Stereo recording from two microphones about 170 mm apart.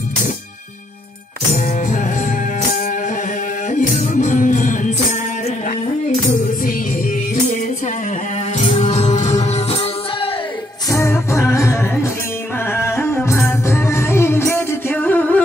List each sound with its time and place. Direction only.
3.7 s music: 45° left (ahead or behind)
8.5 s music: 35° left (ahead or behind)
10.9 s music: 20° left (ahead or behind)